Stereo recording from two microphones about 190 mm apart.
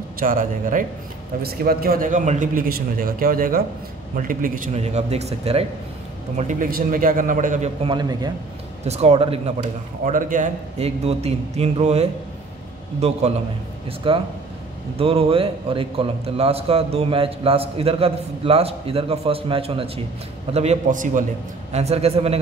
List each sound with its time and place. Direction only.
0.2 s a man's voice: 45° right (ahead or behind)
7.9 s a man's voice: 20° right (ahead or behind)
8.8 s a man's voice: 35° right (ahead or behind)
9.6 s a man's voice: 45° right (ahead or behind)